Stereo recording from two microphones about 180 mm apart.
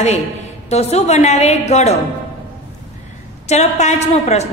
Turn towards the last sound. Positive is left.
turn(degrees=40)  # may be behind; listen again after turning